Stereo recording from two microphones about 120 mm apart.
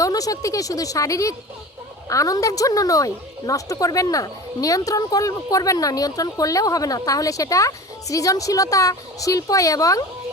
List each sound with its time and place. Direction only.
0.0 s speech: 30° left (ahead or behind)